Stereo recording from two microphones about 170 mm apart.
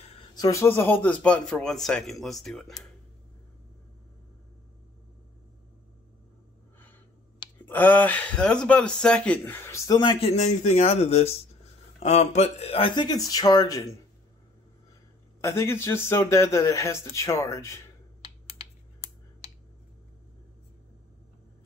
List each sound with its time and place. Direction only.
0.2 s speech: 25° left (ahead or behind); by 2.7 s centre (ahead or behind)
7.6 s speech: 10° left (ahead or behind)
9.9 s speech: 30° left (ahead or behind)
10.3 s speech: 45° left (ahead or behind); by 13.9 s 20° left (ahead or behind)
15.4 s speech: 15° left (ahead or behind)